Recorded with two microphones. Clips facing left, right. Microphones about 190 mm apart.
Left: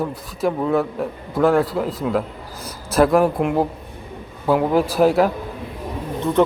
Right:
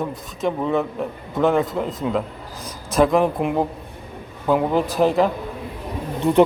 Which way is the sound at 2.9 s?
5° left (ahead or behind).